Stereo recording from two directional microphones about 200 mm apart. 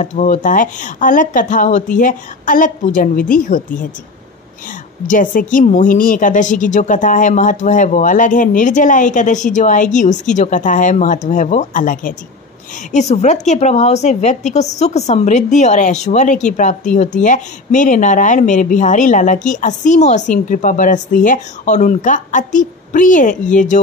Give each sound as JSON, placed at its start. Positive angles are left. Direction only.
{"t": 0.0, "sound": "a woman's voice", "side_deg": 40}
{"t": 5.0, "sound": "a woman's voice", "side_deg": 40}